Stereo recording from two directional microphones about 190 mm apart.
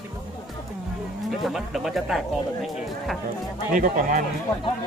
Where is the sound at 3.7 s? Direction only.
45° right (ahead or behind).